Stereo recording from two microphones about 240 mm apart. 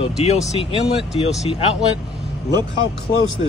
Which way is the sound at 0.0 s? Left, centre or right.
Left.